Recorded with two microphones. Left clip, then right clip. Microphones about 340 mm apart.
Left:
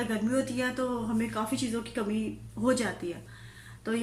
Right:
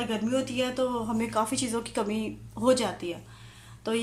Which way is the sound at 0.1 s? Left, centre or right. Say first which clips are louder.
Right 1 dB; centre.